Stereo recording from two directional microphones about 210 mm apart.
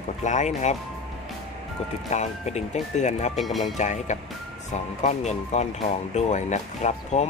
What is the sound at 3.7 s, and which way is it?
Speech, 35° left (ahead or behind).